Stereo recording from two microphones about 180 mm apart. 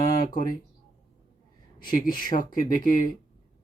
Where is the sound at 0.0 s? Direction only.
50° left (ahead or behind).